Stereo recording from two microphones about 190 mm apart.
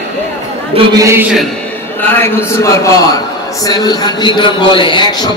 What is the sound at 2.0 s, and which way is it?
A man's voice, 15° left (ahead or behind).